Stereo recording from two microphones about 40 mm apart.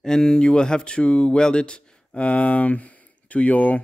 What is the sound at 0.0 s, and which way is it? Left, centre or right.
Speech, centre.